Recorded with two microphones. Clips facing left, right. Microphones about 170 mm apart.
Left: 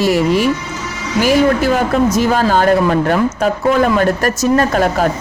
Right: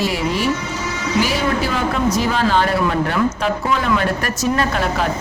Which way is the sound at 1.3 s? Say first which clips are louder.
Left 8 dB; 50° left (ahead or behind).